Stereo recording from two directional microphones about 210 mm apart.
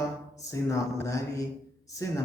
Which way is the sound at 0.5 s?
15° left (ahead or behind).